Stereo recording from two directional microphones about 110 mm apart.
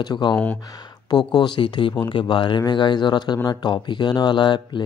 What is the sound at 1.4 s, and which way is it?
Speech, 45° left (ahead or behind).